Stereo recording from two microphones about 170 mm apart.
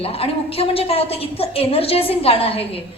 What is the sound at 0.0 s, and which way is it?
A woman's voice, 35° left (ahead or behind).